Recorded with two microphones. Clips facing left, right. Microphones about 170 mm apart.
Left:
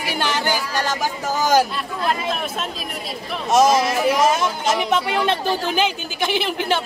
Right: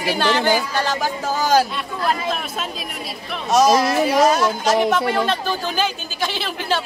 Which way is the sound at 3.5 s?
20° left (ahead or behind).